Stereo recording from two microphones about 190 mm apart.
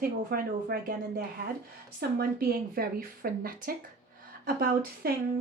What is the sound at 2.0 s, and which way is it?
A woman's voice, 55° right (ahead or behind).